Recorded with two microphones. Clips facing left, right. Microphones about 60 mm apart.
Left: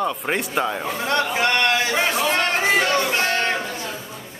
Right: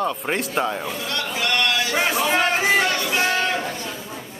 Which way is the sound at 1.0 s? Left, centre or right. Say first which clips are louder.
Left 9 dB; left.